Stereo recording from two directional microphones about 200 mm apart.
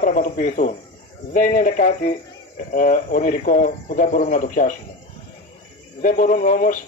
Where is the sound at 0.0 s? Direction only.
40° left (ahead or behind).